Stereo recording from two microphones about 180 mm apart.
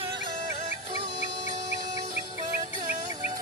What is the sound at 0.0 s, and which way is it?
Music, 25° right (ahead or behind).